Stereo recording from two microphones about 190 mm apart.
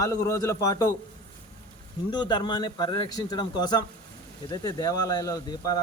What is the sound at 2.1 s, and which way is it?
Speech, 20° left (ahead or behind).